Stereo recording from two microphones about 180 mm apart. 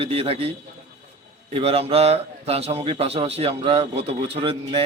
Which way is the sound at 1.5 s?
35° right (ahead or behind).